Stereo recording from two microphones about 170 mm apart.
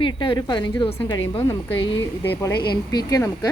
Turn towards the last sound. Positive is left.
turn(degrees=20)  # may be behind; listen again after turning